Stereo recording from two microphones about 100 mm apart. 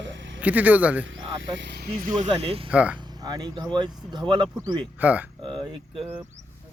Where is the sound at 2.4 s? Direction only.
75° right (ahead or behind).